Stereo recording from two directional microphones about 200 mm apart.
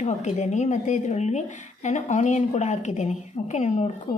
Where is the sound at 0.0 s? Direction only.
35° left (ahead or behind).